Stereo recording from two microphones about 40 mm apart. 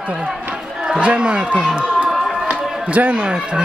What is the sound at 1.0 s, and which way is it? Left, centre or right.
Speech, right.